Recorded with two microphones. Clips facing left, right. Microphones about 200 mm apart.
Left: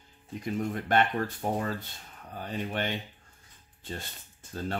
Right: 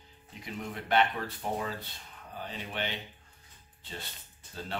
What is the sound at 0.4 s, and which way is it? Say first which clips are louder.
Speech: left 7 dB; 45° left (ahead or behind).